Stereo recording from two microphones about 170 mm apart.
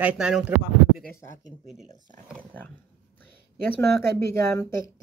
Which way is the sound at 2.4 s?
10° left (ahead or behind).